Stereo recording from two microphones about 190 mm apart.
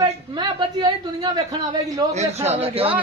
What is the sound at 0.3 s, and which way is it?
Speech, 25° right (ahead or behind).